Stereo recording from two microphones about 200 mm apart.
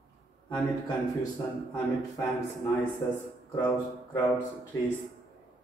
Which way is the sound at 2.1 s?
20° left (ahead or behind).